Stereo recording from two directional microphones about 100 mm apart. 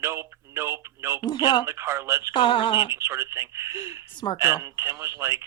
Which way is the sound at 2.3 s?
55° left (ahead or behind).